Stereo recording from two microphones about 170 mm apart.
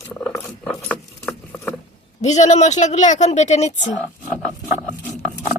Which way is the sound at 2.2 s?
40° left (ahead or behind).